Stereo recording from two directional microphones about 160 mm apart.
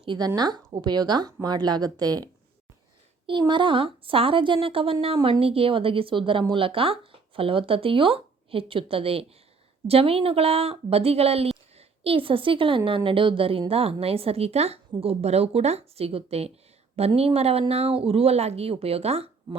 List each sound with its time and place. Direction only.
0.0 s a woman's voice: 30° right (ahead or behind)